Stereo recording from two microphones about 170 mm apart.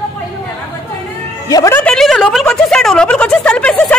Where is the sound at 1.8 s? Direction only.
5° left (ahead or behind).